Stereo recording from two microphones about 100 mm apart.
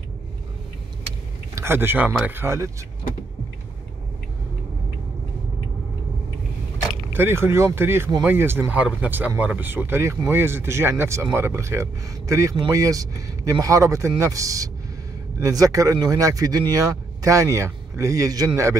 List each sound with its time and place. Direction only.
1.5 s speech: 25° right (ahead or behind)
7.1 s speech: 25° right (ahead or behind)